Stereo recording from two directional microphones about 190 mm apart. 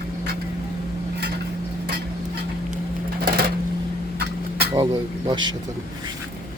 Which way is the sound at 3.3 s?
50° right (ahead or behind).